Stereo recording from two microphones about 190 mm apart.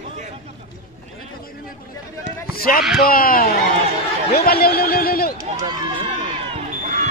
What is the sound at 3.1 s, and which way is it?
Speech, 50° left (ahead or behind).